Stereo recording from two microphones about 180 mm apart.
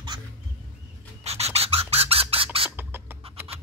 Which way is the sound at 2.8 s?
10° right (ahead or behind).